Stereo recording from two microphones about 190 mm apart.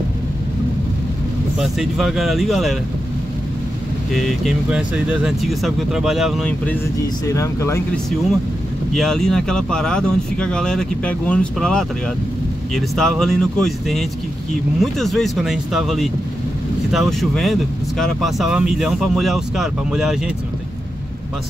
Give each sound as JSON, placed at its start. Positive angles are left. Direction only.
{"t": 1.6, "sound": "speech", "side_deg": 0}
{"t": 4.1, "sound": "speech", "side_deg": 0}
{"t": 8.9, "sound": "speech", "side_deg": 0}